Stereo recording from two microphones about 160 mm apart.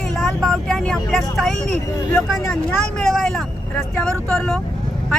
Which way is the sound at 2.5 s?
5° left (ahead or behind).